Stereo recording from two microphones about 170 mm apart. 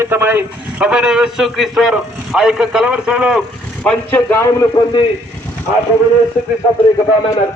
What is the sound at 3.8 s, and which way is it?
Speech, 10° left (ahead or behind).